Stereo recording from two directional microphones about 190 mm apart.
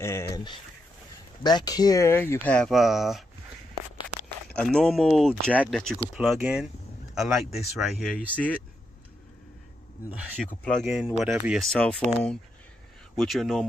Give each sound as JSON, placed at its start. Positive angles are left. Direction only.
{"t": 0.0, "sound": "speech", "side_deg": 15}
{"t": 1.4, "sound": "speech", "side_deg": 20}
{"t": 4.6, "sound": "speech", "side_deg": 5}
{"t": 10.6, "sound": "speech", "side_deg": 5}